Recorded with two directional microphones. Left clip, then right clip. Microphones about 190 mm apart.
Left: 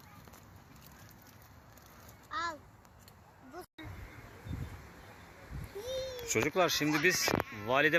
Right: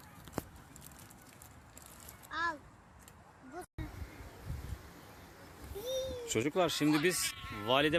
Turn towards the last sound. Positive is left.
turn(degrees=-5)  # may be behind; listen again after turning